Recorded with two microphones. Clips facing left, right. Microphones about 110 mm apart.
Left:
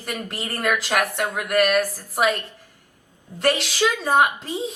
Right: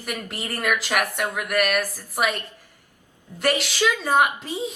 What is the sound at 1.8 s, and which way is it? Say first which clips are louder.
Speech: left 4 dB; 15° left (ahead or behind).